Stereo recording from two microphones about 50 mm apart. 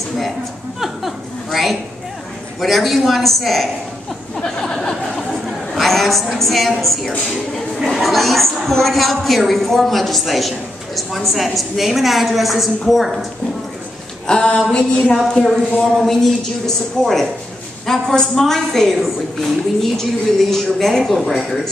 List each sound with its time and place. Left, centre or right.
0.7 s chuckle: centre
2.6 s a woman's voice: centre
4.4 s a woman's voice: centre
5.3 s a woman's voice: centre
7.5 s a sound: centre
8.6 s a woman's voice: centre
14.2 s a woman's voice: centre